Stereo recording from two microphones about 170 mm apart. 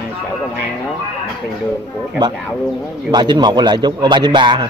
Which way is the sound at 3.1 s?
25° right (ahead or behind).